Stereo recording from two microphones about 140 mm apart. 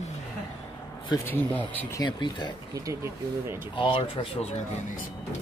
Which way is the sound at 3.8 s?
35° left (ahead or behind).